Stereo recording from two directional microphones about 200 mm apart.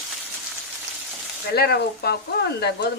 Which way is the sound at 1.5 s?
50° left (ahead or behind).